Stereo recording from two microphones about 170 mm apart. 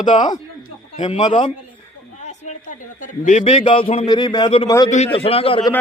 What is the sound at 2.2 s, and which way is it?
A man's voice, 45° left (ahead or behind).